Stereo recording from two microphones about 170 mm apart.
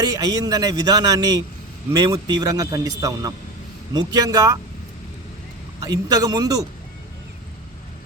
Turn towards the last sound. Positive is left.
turn(degrees=-20)  # may be behind; listen again after turning